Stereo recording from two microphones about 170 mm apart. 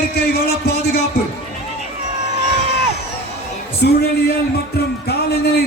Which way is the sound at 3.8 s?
70° left (ahead or behind).